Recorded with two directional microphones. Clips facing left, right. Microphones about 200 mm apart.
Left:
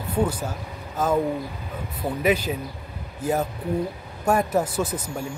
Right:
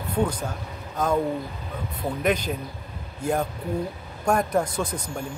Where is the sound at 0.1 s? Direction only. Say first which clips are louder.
Left 1 dB; 5° left (ahead or behind).